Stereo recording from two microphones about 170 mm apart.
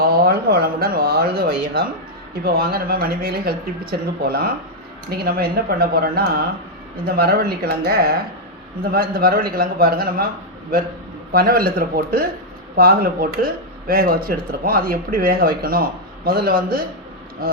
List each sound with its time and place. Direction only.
0.0 s speech: 65° right (ahead or behind)
11.3 s speech: 60° right (ahead or behind)